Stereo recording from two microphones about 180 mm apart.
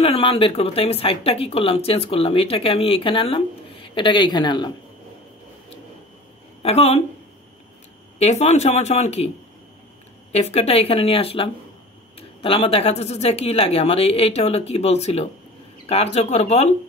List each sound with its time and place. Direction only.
0.0 s speech: 30° left (ahead or behind)
6.6 s speech: 35° left (ahead or behind)
8.2 s speech: 40° left (ahead or behind)
10.3 s speech: 35° left (ahead or behind)